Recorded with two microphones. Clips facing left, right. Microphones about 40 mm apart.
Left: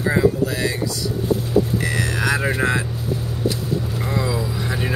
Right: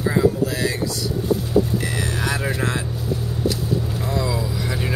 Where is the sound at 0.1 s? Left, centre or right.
Centre.